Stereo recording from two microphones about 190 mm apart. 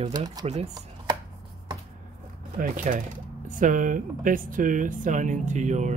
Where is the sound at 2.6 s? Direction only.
45° right (ahead or behind).